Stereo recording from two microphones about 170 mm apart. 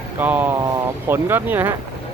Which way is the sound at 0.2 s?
10° right (ahead or behind).